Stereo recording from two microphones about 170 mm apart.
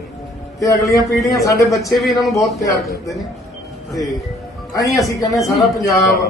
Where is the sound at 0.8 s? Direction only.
Centre (ahead or behind).